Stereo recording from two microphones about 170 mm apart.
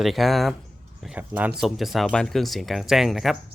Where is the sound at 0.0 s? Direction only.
Centre (ahead or behind).